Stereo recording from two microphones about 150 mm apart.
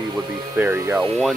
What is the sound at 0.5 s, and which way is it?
Speech, 15° right (ahead or behind).